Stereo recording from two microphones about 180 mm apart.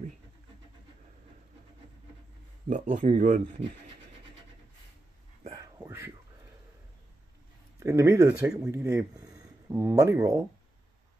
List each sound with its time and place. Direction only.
2.7 s speech: 40° right (ahead or behind)
5.5 s whispering: 20° right (ahead or behind)
7.8 s speech: 15° right (ahead or behind)